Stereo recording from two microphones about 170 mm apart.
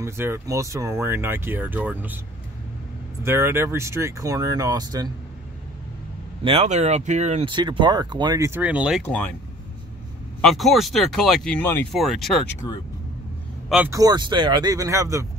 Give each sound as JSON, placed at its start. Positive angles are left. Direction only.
{"t": 0.0, "sound": "speech", "side_deg": -15}
{"t": 3.3, "sound": "speech", "side_deg": -15}
{"t": 6.4, "sound": "speech", "side_deg": -35}
{"t": 7.4, "sound": "speech", "side_deg": -30}
{"t": 9.0, "sound": "speech", "side_deg": 10}
{"t": 10.4, "sound": "speech", "side_deg": 0}
{"t": 13.8, "sound": "speech", "side_deg": -20}